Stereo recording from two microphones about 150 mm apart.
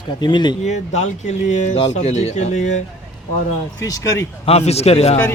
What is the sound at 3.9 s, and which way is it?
Speech, 20° left (ahead or behind).